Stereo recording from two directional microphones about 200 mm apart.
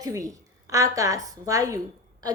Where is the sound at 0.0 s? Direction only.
15° right (ahead or behind).